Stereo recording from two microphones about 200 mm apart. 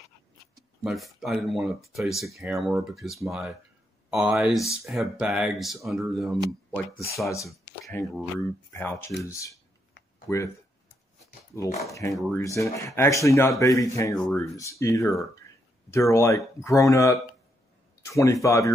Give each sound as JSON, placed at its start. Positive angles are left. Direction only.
{"t": 0.8, "sound": "speech", "side_deg": 0}
{"t": 7.9, "sound": "speech", "side_deg": 15}
{"t": 11.8, "sound": "speech", "side_deg": 15}